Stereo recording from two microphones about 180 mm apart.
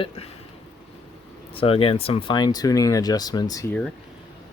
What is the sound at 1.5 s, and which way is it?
Speech, 30° left (ahead or behind).